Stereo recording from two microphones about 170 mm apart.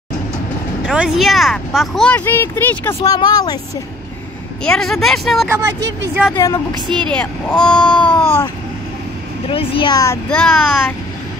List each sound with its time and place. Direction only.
0.8 s speech: 5° right (ahead or behind); by 3.0 s 15° left (ahead or behind)
3.0 s speech: 25° left (ahead or behind)
4.6 s speech: 5° left (ahead or behind)
6.3 s speech: 25° left (ahead or behind)
7.1 s speech: 5° left (ahead or behind)
9.5 s speech: 30° left (ahead or behind)
10.3 s speech: 5° left (ahead or behind)